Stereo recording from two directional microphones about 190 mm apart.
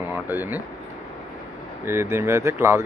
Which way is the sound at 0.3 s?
10° right (ahead or behind).